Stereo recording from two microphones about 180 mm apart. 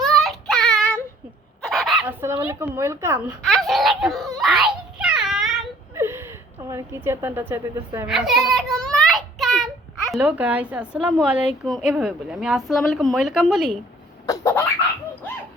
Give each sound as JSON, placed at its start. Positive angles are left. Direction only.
{"t": 0.0, "sound": "child singing", "side_deg": 0}
{"t": 1.6, "sound": "dog", "side_deg": 0}
{"t": 2.0, "sound": "a woman's voice", "side_deg": -15}
{"t": 3.4, "sound": "giggle", "side_deg": 0}
{"t": 5.9, "sound": "a woman's voice", "side_deg": -15}
{"t": 8.1, "sound": "a sound", "side_deg": 0}
{"t": 10.1, "sound": "a woman's voice", "side_deg": -10}
{"t": 14.3, "sound": "a sound", "side_deg": 15}